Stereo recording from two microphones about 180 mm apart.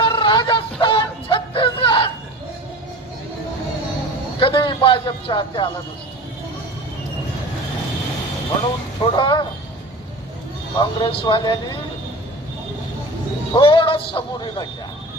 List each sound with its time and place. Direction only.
0.0 s music: 25° left (ahead or behind)
4.4 s a sound: 25° left (ahead or behind)
9.0 s speech: 25° left (ahead or behind)
10.8 s speech: 25° left (ahead or behind)
13.5 s a man's voice: 25° left (ahead or behind)